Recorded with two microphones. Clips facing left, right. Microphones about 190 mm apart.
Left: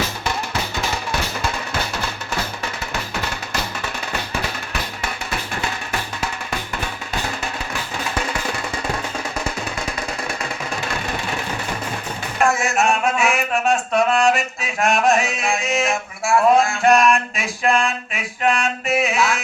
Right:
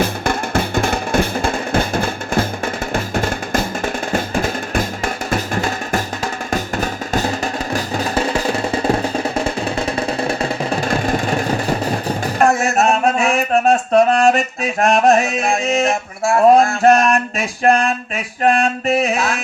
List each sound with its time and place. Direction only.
0.0 s music: 50° right (ahead or behind)